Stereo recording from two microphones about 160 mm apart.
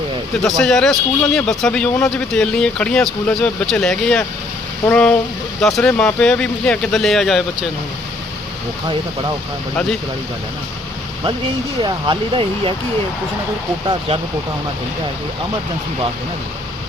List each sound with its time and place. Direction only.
0.4 s a man's voice: centre (ahead or behind)
11.8 s speech: 30° right (ahead or behind)
13.8 s speech: 30° right (ahead or behind)